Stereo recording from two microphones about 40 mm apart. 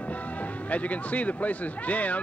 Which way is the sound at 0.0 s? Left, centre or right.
Left.